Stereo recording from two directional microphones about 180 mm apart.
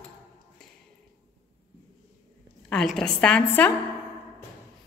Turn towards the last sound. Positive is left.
turn(degrees=5)  # may be behind; listen again after turning